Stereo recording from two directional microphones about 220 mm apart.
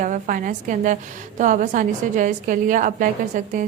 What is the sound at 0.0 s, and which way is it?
A woman's voice, 35° right (ahead or behind).